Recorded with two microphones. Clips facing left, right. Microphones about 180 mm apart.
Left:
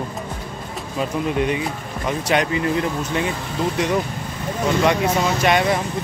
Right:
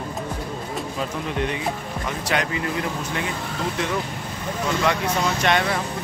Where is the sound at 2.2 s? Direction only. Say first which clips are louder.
Left 5 dB; 20° left (ahead or behind).